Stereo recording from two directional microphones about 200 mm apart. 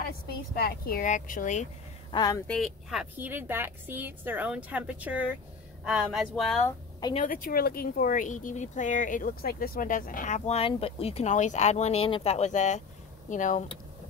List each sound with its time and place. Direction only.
0.6 s speech: 50° left (ahead or behind)
2.0 s speech: 20° left (ahead or behind)
2.4 s a woman's voice: centre (ahead or behind)
7.2 s speech: 45° left (ahead or behind)